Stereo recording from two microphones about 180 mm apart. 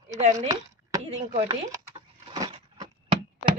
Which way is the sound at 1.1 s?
40° right (ahead or behind).